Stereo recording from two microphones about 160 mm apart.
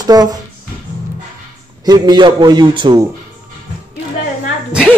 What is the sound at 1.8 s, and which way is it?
Speech, 25° right (ahead or behind).